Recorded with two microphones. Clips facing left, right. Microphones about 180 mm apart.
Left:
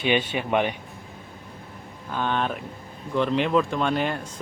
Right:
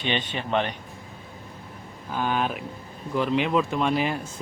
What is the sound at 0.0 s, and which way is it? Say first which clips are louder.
Speech: left 5 dB; 10° left (ahead or behind).